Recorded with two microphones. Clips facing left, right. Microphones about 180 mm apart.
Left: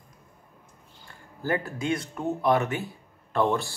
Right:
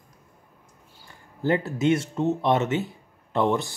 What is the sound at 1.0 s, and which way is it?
Speech, 20° right (ahead or behind).